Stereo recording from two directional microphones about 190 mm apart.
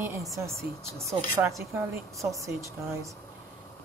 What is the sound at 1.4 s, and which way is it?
Speech, 15° right (ahead or behind).